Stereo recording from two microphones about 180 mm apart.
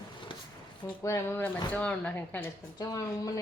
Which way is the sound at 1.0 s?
15° left (ahead or behind).